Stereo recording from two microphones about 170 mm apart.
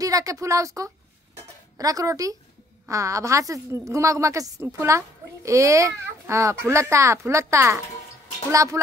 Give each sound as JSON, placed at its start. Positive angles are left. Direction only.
{"t": 0.0, "sound": "a woman's voice", "side_deg": -20}